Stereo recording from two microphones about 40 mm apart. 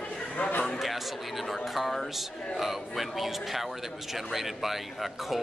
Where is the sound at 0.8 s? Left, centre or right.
Centre.